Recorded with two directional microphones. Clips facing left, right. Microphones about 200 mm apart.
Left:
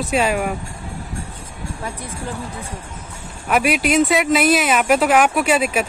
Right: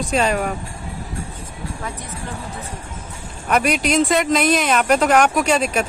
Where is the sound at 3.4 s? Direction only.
5° left (ahead or behind).